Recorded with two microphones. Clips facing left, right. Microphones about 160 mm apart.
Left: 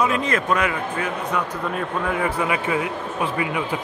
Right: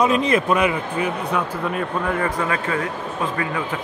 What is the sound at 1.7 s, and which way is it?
Speech, 5° left (ahead or behind).